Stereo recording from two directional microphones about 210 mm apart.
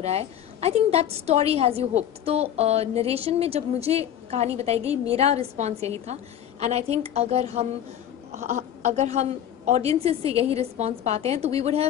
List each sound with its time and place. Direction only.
0.0 s a woman's voice: 30° right (ahead or behind)